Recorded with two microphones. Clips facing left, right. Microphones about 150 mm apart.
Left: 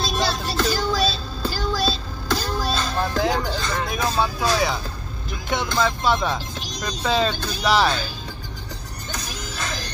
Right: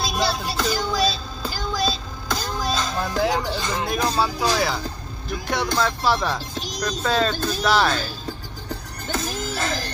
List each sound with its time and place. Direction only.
0.0 s music: centre (ahead or behind)
3.8 s speech: 5° right (ahead or behind)
9.1 s music: 50° right (ahead or behind)